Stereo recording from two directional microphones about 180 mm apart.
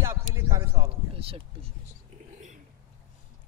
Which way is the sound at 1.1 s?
30° right (ahead or behind).